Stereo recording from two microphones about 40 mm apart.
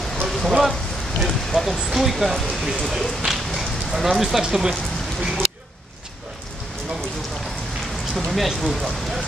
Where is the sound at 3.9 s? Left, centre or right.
Centre.